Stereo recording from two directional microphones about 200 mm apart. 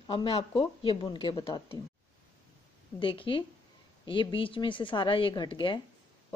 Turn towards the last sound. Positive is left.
turn(degrees=25)  # may be behind; listen again after turning